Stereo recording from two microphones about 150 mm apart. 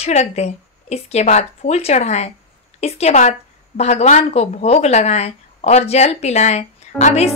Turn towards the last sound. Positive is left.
turn(degrees=50)  # may be behind; listen again after turning